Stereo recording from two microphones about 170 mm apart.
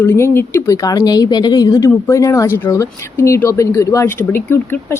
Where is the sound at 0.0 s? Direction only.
15° left (ahead or behind).